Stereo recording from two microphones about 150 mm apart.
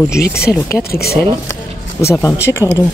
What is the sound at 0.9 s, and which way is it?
Speech, 90° left.